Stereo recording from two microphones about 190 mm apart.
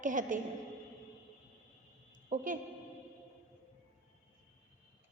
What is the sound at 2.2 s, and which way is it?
Speech, 45° right (ahead or behind).